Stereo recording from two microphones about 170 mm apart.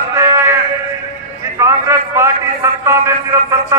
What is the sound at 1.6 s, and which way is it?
A man's voice, 15° right (ahead or behind).